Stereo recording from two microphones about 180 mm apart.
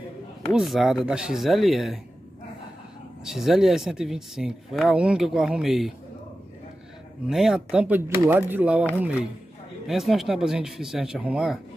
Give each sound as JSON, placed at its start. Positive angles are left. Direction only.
{"t": 0.5, "sound": "speech", "side_deg": 0}
{"t": 3.3, "sound": "speech", "side_deg": 0}
{"t": 7.2, "sound": "speech", "side_deg": -5}
{"t": 9.8, "sound": "speech", "side_deg": 0}